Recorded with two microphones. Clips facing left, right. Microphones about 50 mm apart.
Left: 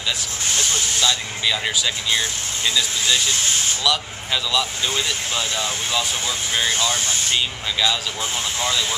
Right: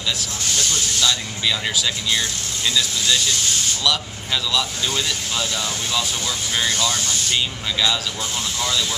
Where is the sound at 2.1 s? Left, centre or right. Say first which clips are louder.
Left 1 dB; centre.